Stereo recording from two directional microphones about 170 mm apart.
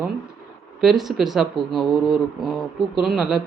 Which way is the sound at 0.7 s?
Centre (ahead or behind).